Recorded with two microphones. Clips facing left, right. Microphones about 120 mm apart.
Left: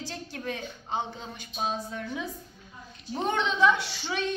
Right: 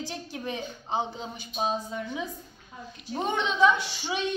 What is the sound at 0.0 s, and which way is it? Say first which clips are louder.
A woman's voice: right 1 dB; 20° right (ahead or behind).